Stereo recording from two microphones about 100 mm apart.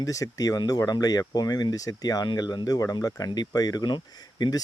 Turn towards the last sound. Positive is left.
turn(degrees=40)  # may be behind; listen again after turning